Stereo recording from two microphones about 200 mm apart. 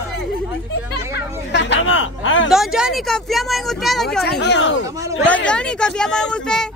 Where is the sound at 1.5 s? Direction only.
60° left (ahead or behind); by 2.4 s 75° left (ahead or behind).